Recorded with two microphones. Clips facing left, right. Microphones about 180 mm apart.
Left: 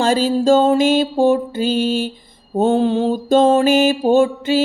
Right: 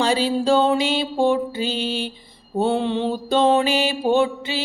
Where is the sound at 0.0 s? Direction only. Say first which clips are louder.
Left 4 dB; 45° left (ahead or behind).